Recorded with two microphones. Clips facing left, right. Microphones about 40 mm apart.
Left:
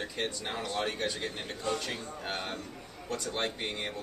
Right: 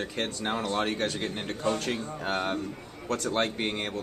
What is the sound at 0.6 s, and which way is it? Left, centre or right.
Speech, right.